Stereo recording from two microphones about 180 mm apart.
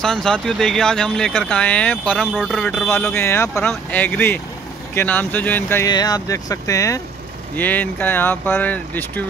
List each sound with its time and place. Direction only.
0.0 s speech: 5° left (ahead or behind)